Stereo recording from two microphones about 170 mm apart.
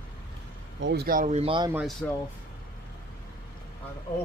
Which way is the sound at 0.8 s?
70° right (ahead or behind).